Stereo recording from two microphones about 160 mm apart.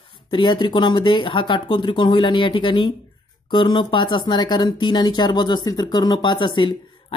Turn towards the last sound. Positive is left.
turn(degrees=30)  # may be behind; listen again after turning